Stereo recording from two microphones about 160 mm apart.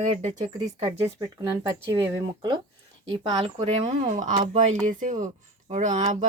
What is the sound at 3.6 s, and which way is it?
Speech, 45° right (ahead or behind).